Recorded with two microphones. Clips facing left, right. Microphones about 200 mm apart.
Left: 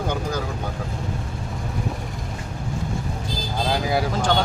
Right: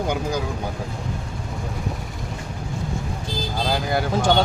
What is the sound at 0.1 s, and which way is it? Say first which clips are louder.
Speech: right 2 dB; 10° right (ahead or behind).